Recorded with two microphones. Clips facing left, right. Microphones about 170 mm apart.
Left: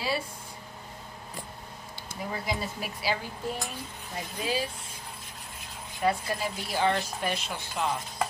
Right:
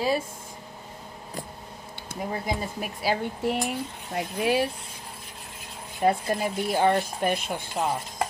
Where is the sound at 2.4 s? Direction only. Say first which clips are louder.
Right 3 dB; 50° right (ahead or behind).